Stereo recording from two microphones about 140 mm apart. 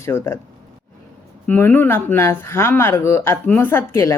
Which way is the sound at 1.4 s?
10° left (ahead or behind).